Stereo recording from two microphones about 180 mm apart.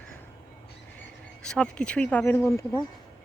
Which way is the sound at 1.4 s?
5° left (ahead or behind).